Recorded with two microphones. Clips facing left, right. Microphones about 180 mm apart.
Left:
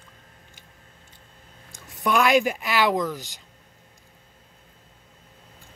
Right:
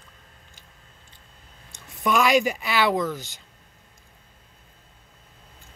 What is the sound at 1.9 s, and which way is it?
Speech, centre (ahead or behind).